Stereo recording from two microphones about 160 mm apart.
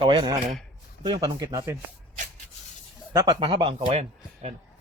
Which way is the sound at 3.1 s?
20° right (ahead or behind).